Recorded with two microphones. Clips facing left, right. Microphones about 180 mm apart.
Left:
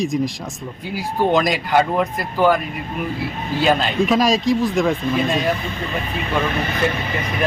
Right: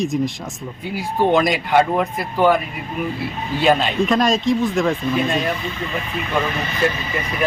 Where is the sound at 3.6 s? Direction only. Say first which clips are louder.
Right 1 dB; centre (ahead or behind).